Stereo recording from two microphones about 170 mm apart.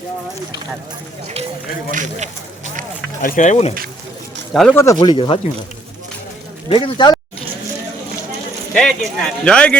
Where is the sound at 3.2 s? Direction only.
50° left (ahead or behind).